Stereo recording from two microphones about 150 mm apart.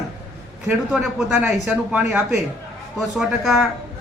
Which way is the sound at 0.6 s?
5° right (ahead or behind).